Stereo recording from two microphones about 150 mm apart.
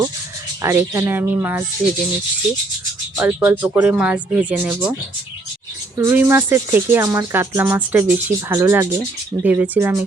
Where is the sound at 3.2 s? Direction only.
10° right (ahead or behind).